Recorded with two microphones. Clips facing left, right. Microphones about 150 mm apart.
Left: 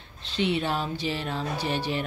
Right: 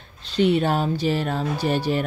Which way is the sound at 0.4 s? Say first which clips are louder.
Right 7 dB; 45° right (ahead or behind).